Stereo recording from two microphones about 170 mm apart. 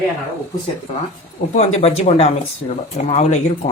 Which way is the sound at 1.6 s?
40° left (ahead or behind).